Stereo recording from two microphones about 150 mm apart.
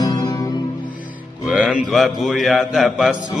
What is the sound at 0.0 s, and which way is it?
Music, 30° left (ahead or behind).